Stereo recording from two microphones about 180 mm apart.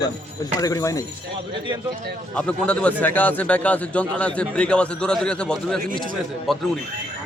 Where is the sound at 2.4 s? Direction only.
5° left (ahead or behind).